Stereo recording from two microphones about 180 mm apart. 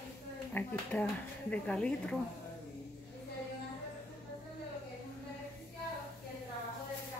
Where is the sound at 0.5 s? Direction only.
5° left (ahead or behind).